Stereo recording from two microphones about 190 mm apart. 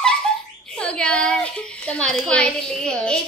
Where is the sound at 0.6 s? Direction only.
5° left (ahead or behind).